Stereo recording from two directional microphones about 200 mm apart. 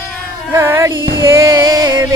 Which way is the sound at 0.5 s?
10° right (ahead or behind).